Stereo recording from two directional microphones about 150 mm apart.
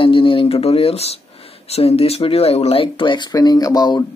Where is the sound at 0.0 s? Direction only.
35° left (ahead or behind).